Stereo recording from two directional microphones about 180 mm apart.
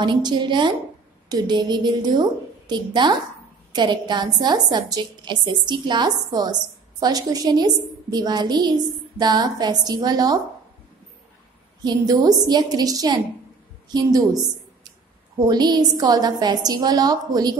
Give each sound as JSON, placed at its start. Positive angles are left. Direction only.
{"t": 0.0, "sound": "a woman's voice", "side_deg": -25}
{"t": 11.8, "sound": "a woman's voice", "side_deg": -20}
{"t": 15.4, "sound": "a woman's voice", "side_deg": -20}